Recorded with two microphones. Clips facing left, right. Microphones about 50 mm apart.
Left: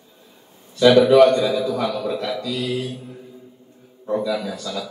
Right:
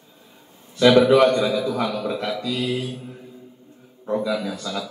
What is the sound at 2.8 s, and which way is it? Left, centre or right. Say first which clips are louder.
Mantra: left 1 dB; centre.